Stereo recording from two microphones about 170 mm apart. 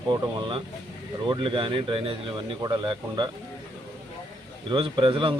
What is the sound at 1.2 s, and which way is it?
Speech, 30° right (ahead or behind).